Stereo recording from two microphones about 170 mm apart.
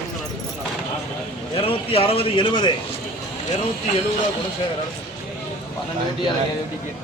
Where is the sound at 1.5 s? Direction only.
35° left (ahead or behind).